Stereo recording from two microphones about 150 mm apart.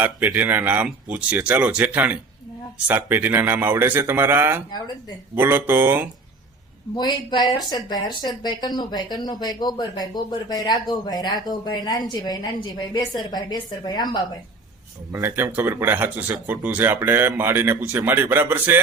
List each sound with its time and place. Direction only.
0.0 s speech: 10° right (ahead or behind)
6.9 s speech: 30° left (ahead or behind)
15.1 s speech: 15° right (ahead or behind)